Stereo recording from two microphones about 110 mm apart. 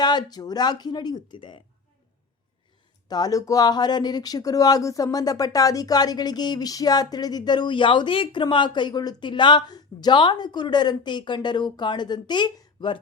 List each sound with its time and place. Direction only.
0.0 s speech: 40° left (ahead or behind)
3.1 s speech: 35° left (ahead or behind)